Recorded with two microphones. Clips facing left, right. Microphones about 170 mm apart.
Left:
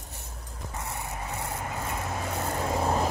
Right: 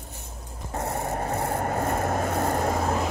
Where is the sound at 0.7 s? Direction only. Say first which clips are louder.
Right 9 dB; 60° right (ahead or behind).